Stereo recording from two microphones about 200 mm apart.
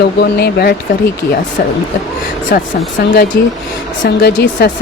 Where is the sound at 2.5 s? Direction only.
55° left (ahead or behind).